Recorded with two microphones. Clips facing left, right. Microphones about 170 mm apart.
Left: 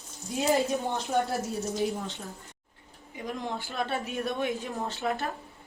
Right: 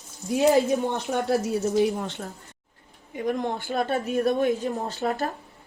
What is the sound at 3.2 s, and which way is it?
A woman's voice, 55° right (ahead or behind).